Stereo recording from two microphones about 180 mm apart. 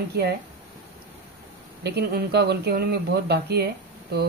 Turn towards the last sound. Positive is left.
turn(degrees=-65)  # may be behind; listen again after turning